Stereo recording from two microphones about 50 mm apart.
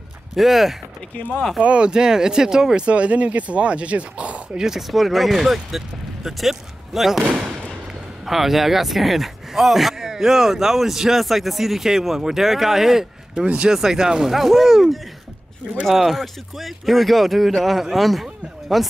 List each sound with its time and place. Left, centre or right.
0.4 s speech: centre
1.6 s speech: right
4.6 s speech: centre
13.5 s speech: centre